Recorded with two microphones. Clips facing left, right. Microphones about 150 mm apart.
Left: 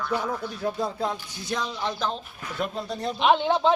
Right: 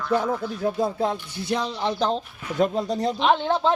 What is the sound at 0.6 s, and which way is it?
Speech, 20° right (ahead or behind).